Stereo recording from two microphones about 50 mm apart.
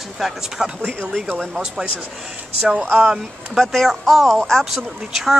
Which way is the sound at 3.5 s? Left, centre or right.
Centre.